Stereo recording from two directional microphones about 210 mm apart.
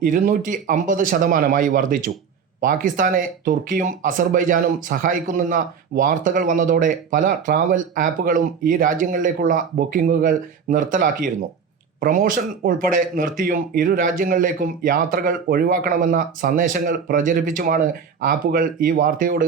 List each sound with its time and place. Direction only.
0.0 s speech: 40° right (ahead or behind)